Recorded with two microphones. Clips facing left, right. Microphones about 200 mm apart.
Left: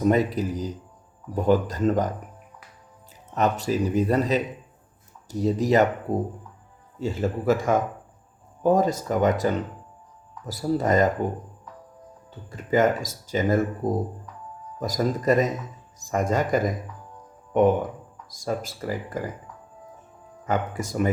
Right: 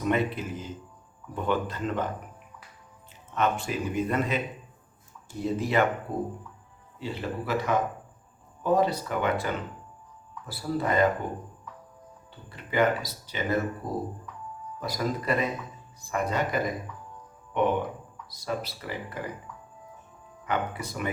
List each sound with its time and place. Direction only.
0.0 s speech: 40° left (ahead or behind)
3.3 s speech: 40° left (ahead or behind)
7.0 s speech: 45° left (ahead or behind)
12.3 s speech: 45° left (ahead or behind)
20.4 s speech: 45° left (ahead or behind)